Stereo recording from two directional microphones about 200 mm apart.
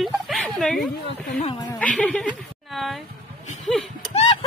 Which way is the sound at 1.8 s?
5° left (ahead or behind).